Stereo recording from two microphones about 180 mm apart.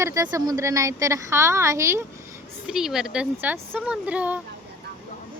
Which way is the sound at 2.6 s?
5° right (ahead or behind).